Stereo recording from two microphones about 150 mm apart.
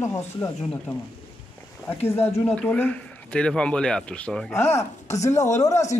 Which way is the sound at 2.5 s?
10° left (ahead or behind).